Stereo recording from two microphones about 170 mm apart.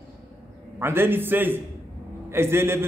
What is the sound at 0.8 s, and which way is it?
A man's voice, 15° right (ahead or behind).